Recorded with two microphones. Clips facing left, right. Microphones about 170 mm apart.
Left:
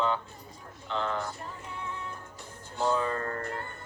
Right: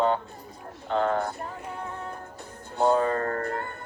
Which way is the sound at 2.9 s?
45° right (ahead or behind).